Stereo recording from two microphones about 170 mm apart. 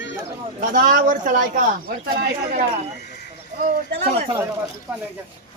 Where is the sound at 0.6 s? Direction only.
55° right (ahead or behind).